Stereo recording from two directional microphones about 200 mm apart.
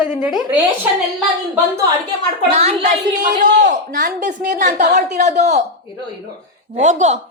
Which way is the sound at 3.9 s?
45° right (ahead or behind).